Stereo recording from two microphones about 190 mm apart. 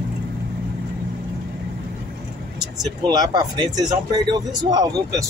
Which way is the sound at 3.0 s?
20° right (ahead or behind).